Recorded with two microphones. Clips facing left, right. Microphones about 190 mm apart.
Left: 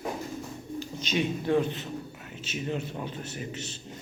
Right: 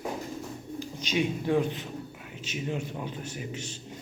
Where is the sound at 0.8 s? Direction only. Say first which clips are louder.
Right 1 dB; 10° right (ahead or behind).